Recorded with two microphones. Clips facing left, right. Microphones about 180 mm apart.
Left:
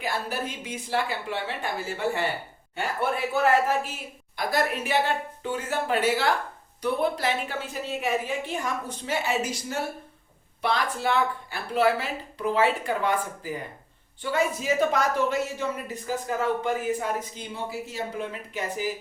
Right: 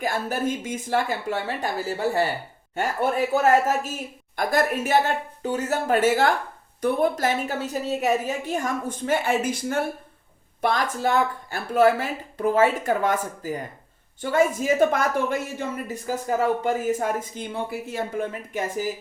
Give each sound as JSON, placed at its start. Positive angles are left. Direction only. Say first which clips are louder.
{"t": 0.0, "sound": "a woman's voice", "louder": "right 5 dB", "side_deg": -45}